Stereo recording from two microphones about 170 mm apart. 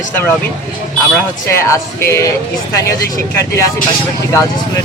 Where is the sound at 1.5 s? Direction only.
15° left (ahead or behind).